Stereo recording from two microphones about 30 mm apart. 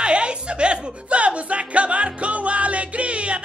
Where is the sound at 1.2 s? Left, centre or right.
Right.